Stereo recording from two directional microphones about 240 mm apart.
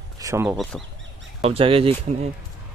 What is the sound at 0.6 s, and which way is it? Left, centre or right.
Speech, centre.